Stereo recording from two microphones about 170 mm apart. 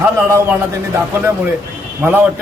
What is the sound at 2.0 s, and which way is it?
Speech, 10° right (ahead or behind).